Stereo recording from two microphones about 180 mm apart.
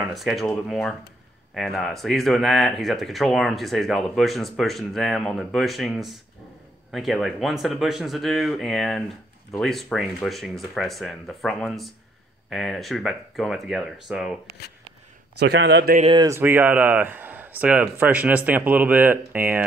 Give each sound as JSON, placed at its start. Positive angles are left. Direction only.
{"t": 0.0, "sound": "speech", "side_deg": 0}
{"t": 15.3, "sound": "a man's voice", "side_deg": -70}
{"t": 16.0, "sound": "speech", "side_deg": -30}
{"t": 16.3, "sound": "speech", "side_deg": -15}